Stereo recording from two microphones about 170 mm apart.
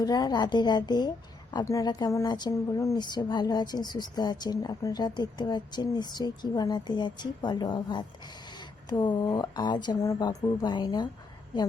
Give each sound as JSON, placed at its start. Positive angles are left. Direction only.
{"t": 0.0, "sound": "a woman's voice", "side_deg": 25}